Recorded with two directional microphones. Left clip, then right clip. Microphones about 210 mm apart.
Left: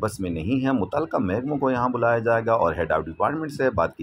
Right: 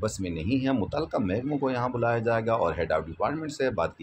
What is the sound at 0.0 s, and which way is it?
Speech, 20° left (ahead or behind).